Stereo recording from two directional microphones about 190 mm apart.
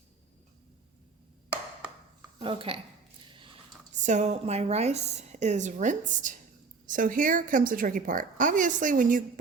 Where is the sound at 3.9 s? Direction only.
40° right (ahead or behind).